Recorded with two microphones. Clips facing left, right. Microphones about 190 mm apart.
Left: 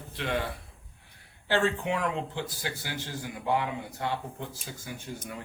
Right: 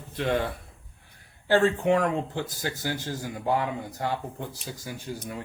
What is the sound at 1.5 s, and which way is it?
Speech, 45° right (ahead or behind).